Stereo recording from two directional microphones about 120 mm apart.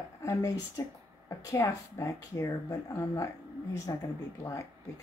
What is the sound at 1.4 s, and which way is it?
Speech, 30° left (ahead or behind).